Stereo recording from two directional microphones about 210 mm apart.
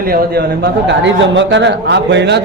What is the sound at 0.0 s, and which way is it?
A man's voice, 45° right (ahead or behind).